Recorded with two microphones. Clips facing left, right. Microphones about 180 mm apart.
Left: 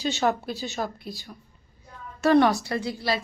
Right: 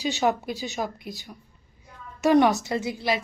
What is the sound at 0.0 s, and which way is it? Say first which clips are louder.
A woman's voice: right 1 dB; 15° right (ahead or behind).